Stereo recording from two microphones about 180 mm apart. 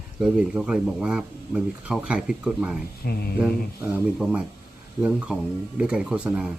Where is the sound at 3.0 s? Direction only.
60° left (ahead or behind).